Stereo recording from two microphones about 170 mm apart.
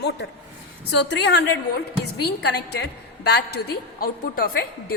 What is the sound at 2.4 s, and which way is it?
A woman's voice, 75° left (ahead or behind).